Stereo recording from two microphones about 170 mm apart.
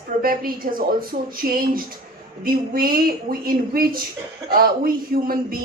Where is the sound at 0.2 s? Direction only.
60° right (ahead or behind).